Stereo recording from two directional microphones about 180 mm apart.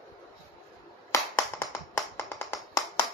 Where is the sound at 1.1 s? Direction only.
15° left (ahead or behind).